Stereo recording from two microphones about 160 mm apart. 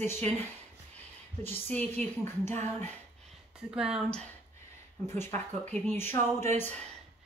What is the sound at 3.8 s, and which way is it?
Speech, 5° right (ahead or behind).